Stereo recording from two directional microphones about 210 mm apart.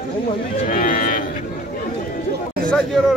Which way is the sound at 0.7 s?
40° left (ahead or behind).